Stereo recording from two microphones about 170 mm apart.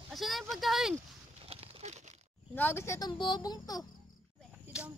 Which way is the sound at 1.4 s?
35° right (ahead or behind).